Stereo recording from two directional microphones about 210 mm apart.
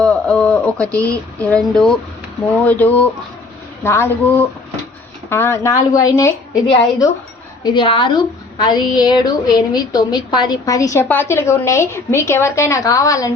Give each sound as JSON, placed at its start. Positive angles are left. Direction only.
{"t": 0.0, "sound": "a sound", "side_deg": 5}
{"t": 1.4, "sound": "a woman's voice", "side_deg": 5}
{"t": 7.6, "sound": "a woman's voice", "side_deg": 20}